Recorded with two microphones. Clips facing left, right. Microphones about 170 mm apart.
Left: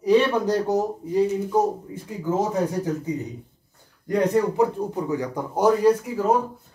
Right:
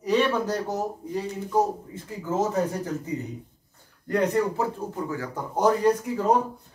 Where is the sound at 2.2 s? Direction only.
10° left (ahead or behind).